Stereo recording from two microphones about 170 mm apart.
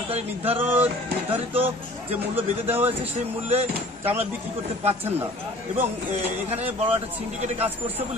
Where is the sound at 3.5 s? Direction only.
35° right (ahead or behind).